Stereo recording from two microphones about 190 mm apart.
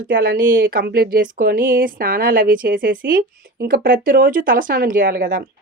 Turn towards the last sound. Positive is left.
turn(degrees=-45)  # may be behind; listen again after turning